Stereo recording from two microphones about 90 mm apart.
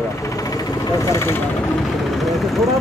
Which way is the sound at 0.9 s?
35° left (ahead or behind).